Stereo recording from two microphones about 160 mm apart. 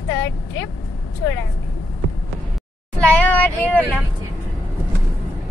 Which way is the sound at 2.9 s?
10° left (ahead or behind).